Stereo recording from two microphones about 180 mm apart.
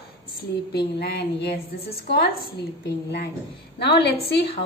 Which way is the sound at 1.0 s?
65° left (ahead or behind).